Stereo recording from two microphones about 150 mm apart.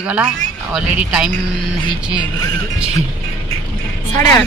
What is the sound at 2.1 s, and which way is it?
Speech, 30° left (ahead or behind).